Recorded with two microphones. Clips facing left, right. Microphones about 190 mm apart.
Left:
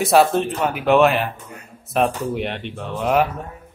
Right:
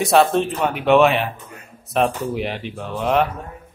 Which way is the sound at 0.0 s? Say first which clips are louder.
Even; centre (ahead or behind).